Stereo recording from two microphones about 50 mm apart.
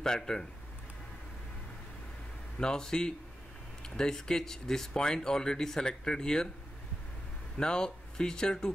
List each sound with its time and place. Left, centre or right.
0.0 s speech: centre
2.6 s speech: centre
7.5 s speech: centre